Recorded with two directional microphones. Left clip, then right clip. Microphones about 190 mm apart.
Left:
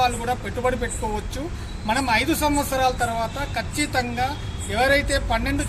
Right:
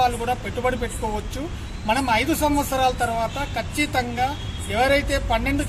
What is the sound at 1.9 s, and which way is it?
Speech, 5° right (ahead or behind).